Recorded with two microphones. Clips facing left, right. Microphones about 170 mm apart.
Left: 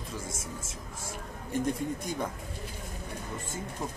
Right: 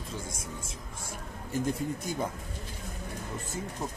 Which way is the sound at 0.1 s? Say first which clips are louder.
Left 1 dB; centre (ahead or behind).